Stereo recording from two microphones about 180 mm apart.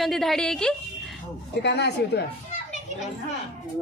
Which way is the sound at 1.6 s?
70° left (ahead or behind).